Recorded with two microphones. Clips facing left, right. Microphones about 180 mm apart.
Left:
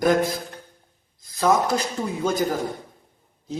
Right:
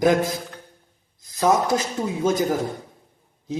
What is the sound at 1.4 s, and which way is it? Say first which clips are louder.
Speech: right 1 dB; 20° right (ahead or behind).